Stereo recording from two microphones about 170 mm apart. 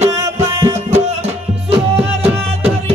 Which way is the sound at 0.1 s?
20° right (ahead or behind).